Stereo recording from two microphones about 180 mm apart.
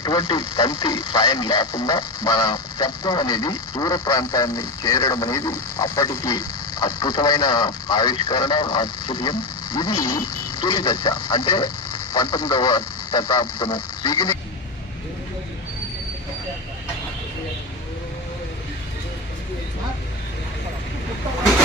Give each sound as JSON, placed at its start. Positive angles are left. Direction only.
{"t": 0.0, "sound": "speech", "side_deg": 20}